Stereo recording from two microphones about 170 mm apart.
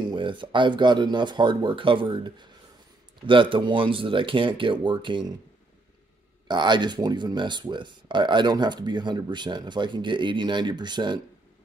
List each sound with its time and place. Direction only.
0.1 s speech: 30° right (ahead or behind)
6.4 s speech: 25° right (ahead or behind)